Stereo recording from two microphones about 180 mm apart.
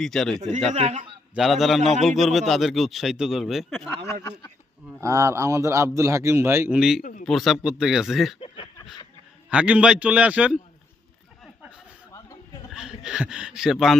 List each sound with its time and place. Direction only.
0.0 s speech: 5° left (ahead or behind)
0.7 s a man's voice: 40° right (ahead or behind)
1.4 s speech: centre (ahead or behind)
4.1 s a man's voice: 20° left (ahead or behind)
4.9 s a man's voice: 15° right (ahead or behind)
7.0 s a sound: 45° left (ahead or behind)
7.3 s speech: centre (ahead or behind)
8.4 s a sound: 30° left (ahead or behind)
9.5 s a man's voice: 5° right (ahead or behind)
12.7 s a man's voice: 5° right (ahead or behind)